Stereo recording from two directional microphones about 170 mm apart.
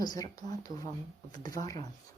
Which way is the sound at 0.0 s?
25° left (ahead or behind).